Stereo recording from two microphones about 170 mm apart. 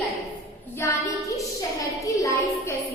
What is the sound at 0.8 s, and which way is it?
Child singing, 20° left (ahead or behind).